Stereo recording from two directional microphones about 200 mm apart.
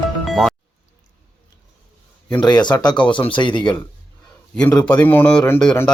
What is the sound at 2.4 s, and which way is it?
Speech, 20° left (ahead or behind).